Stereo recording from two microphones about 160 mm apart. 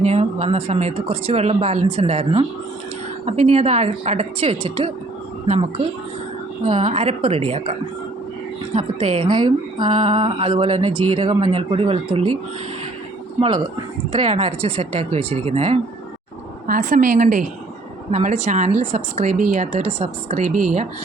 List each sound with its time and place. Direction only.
0.0 s speech: 45° right (ahead or behind)
14.1 s speech: 35° right (ahead or behind)
16.6 s a woman's voice: 60° right (ahead or behind)